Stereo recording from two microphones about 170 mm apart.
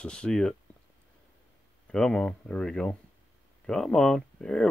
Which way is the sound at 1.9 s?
5° left (ahead or behind).